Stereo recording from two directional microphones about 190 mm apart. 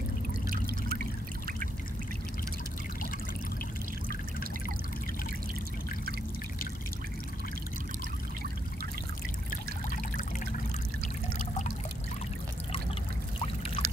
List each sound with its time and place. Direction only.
0.5 s trickle: 50° right (ahead or behind)
13.8 s trickle: 30° left (ahead or behind)